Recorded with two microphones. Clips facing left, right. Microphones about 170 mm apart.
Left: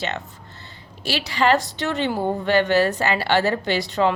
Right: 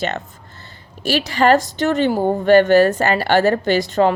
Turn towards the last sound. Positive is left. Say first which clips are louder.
# right 5 dB
turn(degrees=-50)  # may be behind; listen again after turning